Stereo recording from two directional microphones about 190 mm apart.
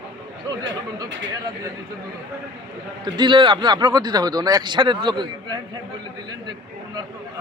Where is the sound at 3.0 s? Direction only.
25° right (ahead or behind).